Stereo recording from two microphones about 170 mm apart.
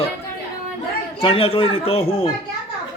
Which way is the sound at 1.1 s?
35° left (ahead or behind).